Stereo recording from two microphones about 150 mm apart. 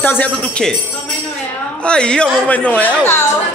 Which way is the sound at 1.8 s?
5° left (ahead or behind).